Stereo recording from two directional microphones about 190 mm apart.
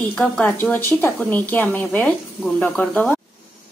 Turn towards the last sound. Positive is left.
turn(degrees=10)  # may be behind; listen again after turning